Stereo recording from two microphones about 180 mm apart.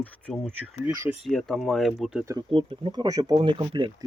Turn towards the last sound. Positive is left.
turn(degrees=-25)  # may be behind; listen again after turning